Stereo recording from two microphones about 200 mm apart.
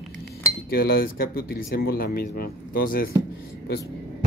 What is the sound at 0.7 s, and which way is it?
Speech, 50° left (ahead or behind).